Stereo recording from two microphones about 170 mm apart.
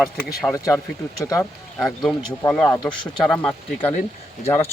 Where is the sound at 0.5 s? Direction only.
20° left (ahead or behind).